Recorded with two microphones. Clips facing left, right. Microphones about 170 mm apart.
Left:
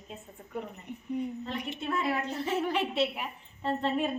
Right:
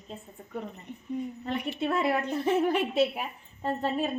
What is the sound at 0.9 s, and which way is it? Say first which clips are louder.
Speech: left 1 dB; 15° left (ahead or behind).